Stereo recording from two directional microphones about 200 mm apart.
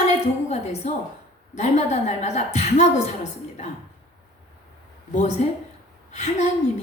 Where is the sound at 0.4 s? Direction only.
35° left (ahead or behind).